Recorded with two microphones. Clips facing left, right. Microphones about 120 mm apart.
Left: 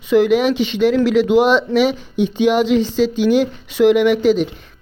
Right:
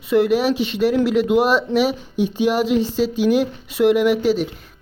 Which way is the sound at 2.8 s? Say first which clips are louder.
Left 3 dB; 90° left.